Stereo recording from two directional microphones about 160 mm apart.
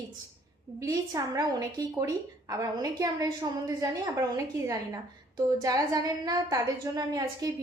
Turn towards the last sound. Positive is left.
turn(degrees=-20)  # may be behind; listen again after turning